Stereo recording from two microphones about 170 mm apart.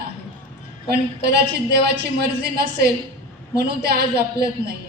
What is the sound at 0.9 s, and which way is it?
A woman's voice, 75° right (ahead or behind).